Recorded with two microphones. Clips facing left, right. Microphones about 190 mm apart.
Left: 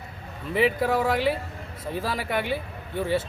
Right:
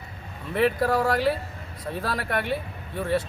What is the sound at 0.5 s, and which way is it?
Speech, centre (ahead or behind).